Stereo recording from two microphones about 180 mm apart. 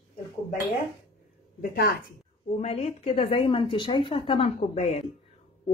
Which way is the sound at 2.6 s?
35° left (ahead or behind).